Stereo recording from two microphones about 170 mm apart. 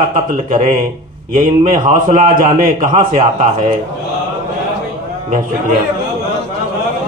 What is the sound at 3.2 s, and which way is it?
Speech, 40° right (ahead or behind).